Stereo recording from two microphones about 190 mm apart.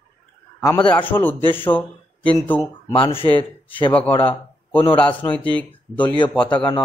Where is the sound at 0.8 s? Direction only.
10° left (ahead or behind).